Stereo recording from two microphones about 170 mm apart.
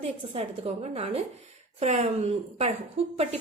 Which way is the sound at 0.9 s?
35° right (ahead or behind).